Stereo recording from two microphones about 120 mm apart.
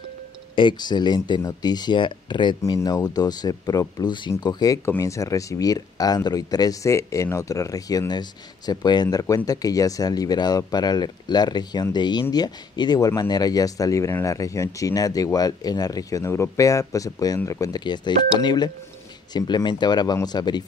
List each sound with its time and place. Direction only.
0.6 s speech: 40° left (ahead or behind)
4.8 s speech: 25° left (ahead or behind)
17.8 s speech: 40° left (ahead or behind)